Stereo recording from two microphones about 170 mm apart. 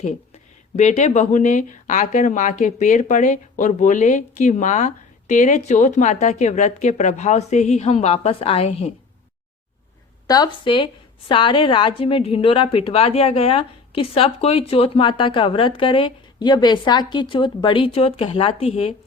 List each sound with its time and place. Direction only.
0.8 s a woman's voice: 40° left (ahead or behind)
10.2 s a woman's voice: 25° left (ahead or behind)